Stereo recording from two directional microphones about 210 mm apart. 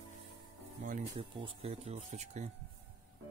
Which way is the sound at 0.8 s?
35° right (ahead or behind).